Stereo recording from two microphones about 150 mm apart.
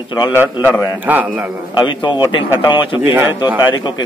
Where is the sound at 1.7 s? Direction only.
30° left (ahead or behind).